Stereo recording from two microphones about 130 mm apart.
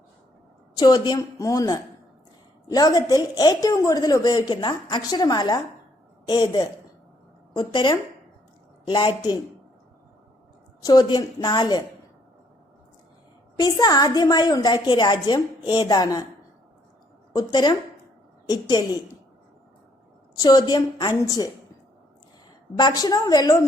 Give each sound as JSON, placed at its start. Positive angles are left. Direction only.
{"t": 0.8, "sound": "a woman's voice", "side_deg": 30}
{"t": 10.8, "sound": "a woman's voice", "side_deg": 30}
{"t": 13.6, "sound": "a woman's voice", "side_deg": 30}
{"t": 17.3, "sound": "a woman's voice", "side_deg": 35}
{"t": 20.4, "sound": "a woman's voice", "side_deg": 30}
{"t": 22.8, "sound": "a woman's voice", "side_deg": 30}